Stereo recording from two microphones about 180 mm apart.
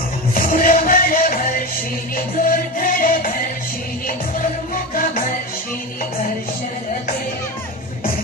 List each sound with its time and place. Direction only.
0.3 s music: 50° left (ahead or behind)
4.7 s music: 50° left (ahead or behind)